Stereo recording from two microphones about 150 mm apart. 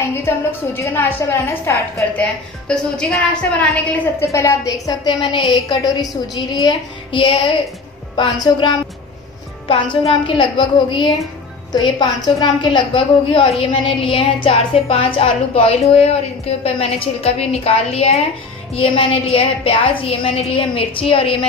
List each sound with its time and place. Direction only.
0.1 s a woman's voice: 15° left (ahead or behind)
2.7 s a woman's voice: 5° left (ahead or behind)
4.3 s a woman's voice: 20° left (ahead or behind); by 21.5 s 35° left (ahead or behind)